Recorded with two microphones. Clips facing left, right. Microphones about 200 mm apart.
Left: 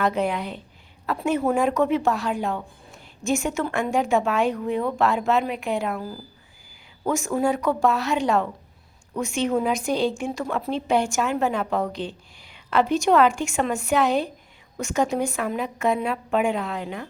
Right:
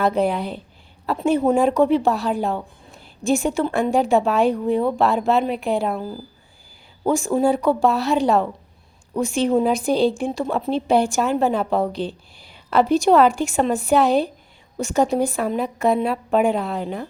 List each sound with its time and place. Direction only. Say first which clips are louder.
0.0 s a woman's voice: right 4 dB; 35° right (ahead or behind)
7.0 s a woman's voice: right 4 dB; 30° right (ahead or behind)